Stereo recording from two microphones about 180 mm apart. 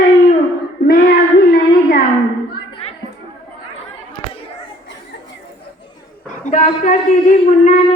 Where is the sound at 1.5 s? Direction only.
55° left (ahead or behind).